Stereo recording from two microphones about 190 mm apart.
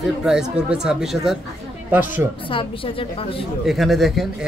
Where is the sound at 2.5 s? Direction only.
25° left (ahead or behind).